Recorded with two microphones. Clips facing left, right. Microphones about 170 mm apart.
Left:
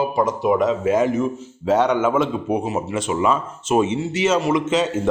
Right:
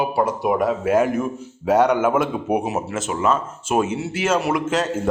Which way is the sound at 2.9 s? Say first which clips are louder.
Left 2 dB; centre (ahead or behind).